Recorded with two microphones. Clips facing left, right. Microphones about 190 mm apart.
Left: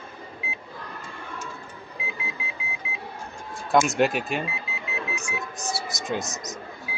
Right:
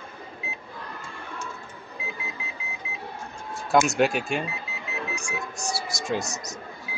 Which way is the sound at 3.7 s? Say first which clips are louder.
Even; centre (ahead or behind).